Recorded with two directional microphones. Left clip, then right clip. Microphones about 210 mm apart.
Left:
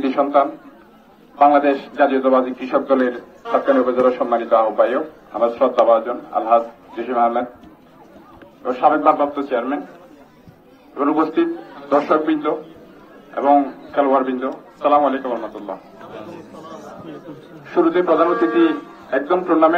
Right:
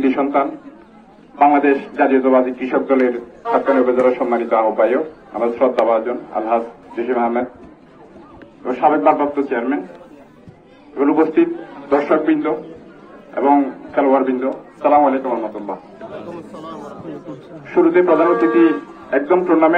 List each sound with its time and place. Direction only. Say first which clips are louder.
0.0 s chatter: left 1 dB; 15° left (ahead or behind)
1.4 s a man's voice: even; 15° left (ahead or behind)
8.6 s a man's voice: right 1 dB; 15° left (ahead or behind)
11.0 s a man's voice: right 3 dB; 15° left (ahead or behind)
17.7 s a man's voice: right 2 dB; 10° left (ahead or behind)